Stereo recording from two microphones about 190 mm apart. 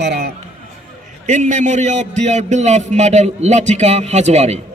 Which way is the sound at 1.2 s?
40° right (ahead or behind).